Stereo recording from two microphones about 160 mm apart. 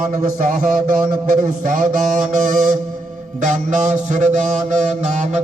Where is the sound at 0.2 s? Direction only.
55° right (ahead or behind).